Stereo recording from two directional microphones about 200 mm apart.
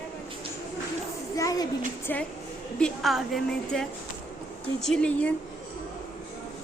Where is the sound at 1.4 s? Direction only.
15° left (ahead or behind).